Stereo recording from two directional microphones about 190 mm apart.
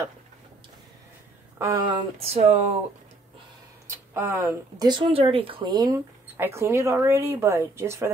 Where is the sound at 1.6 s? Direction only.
20° right (ahead or behind).